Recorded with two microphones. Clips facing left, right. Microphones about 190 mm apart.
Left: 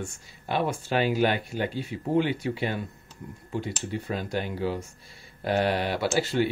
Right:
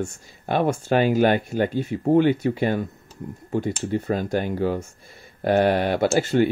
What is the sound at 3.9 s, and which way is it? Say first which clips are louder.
Speech: right 8 dB; 45° right (ahead or behind).